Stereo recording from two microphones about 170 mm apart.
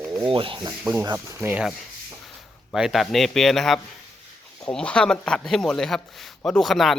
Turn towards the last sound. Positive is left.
turn(degrees=0)  # may be behind; listen again after turning